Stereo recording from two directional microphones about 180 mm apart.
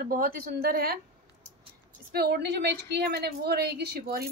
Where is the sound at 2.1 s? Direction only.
60° right (ahead or behind).